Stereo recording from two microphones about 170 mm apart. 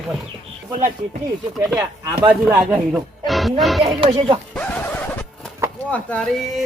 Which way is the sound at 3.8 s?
30° right (ahead or behind).